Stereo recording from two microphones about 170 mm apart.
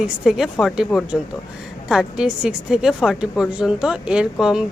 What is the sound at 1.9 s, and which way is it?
A woman's voice, 5° right (ahead or behind).